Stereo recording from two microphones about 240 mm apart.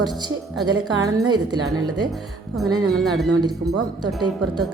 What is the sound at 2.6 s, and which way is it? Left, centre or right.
Speech, centre.